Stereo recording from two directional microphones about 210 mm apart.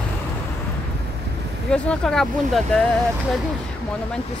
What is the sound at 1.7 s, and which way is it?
Speech, 5° left (ahead or behind).